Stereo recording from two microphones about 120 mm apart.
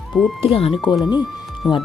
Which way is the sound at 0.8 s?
35° left (ahead or behind).